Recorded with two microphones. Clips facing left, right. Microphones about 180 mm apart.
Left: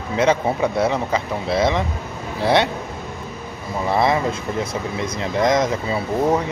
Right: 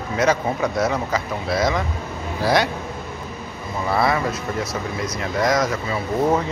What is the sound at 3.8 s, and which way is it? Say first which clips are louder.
A man's voice: left 2 dB; 20° left (ahead or behind).